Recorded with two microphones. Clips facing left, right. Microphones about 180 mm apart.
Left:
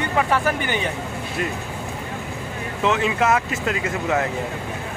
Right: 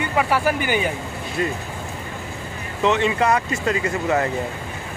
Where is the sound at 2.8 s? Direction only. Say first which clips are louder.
Right 2 dB; 5° left (ahead or behind).